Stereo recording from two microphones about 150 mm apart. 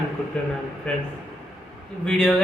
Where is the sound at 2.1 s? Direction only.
5° left (ahead or behind).